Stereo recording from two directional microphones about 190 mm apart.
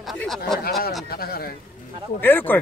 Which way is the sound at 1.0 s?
55° left (ahead or behind).